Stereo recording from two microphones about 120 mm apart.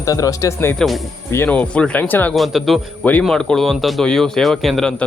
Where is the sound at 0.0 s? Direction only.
30° left (ahead or behind).